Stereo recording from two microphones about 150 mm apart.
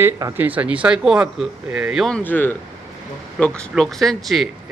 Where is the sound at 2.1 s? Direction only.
10° left (ahead or behind).